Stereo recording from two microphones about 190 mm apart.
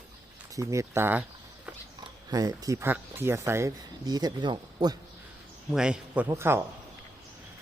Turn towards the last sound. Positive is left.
turn(degrees=-15)  # may be behind; listen again after turning